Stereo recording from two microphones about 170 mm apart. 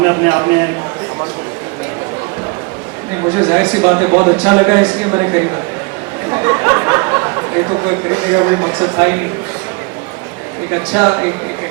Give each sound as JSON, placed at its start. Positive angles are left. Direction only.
{"t": 0.0, "sound": "speech", "side_deg": -15}
{"t": 3.3, "sound": "speech", "side_deg": -15}
{"t": 10.7, "sound": "speech", "side_deg": -15}